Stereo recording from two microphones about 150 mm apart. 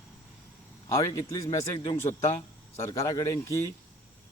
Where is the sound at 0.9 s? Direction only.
20° left (ahead or behind).